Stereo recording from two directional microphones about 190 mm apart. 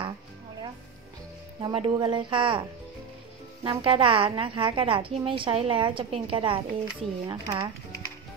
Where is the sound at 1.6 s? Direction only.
25° right (ahead or behind).